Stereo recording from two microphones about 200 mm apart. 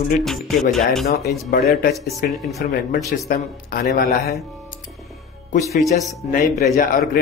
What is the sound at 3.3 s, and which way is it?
Speech, 50° left (ahead or behind).